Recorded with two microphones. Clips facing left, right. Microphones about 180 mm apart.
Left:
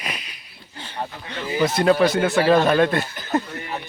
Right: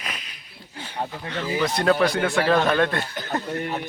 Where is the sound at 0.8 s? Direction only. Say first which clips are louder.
Right 1 dB; 10° right (ahead or behind).